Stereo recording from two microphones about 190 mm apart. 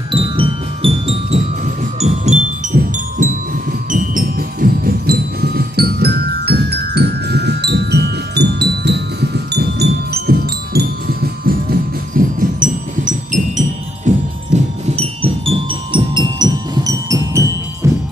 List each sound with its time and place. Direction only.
0.1 s music: 30° right (ahead or behind); by 11.5 s 55° right (ahead or behind)
12.4 s music: 45° right (ahead or behind); by 17.9 s 15° right (ahead or behind)